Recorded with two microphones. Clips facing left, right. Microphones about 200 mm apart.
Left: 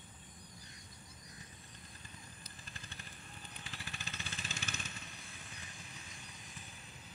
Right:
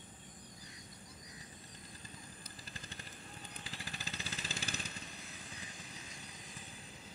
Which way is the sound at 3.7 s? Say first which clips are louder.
Right 2 dB; 35° right (ahead or behind).